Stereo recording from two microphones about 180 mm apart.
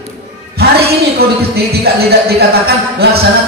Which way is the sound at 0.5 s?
60° right (ahead or behind).